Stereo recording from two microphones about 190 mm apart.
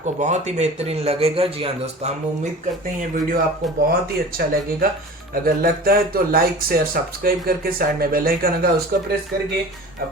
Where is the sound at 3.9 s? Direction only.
50° right (ahead or behind).